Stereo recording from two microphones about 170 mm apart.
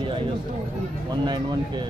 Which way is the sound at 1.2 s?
25° right (ahead or behind).